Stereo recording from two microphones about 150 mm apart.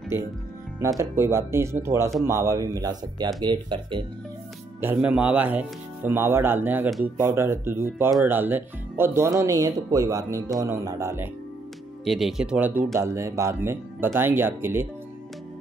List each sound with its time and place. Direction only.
0.1 s speech: 15° right (ahead or behind); by 4.0 s 30° right (ahead or behind)
5.0 s speech: 10° right (ahead or behind)
12.0 s speech: centre (ahead or behind)